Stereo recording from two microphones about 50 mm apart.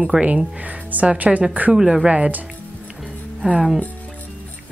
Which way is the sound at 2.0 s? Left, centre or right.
Right.